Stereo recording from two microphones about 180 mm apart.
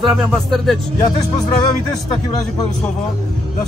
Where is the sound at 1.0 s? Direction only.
25° left (ahead or behind).